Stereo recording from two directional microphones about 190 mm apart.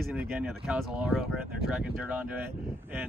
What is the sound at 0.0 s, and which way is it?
Speech, centre (ahead or behind).